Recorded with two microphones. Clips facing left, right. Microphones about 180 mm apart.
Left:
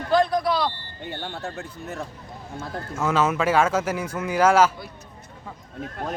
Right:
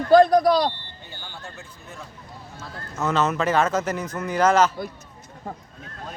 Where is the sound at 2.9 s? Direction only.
10° left (ahead or behind).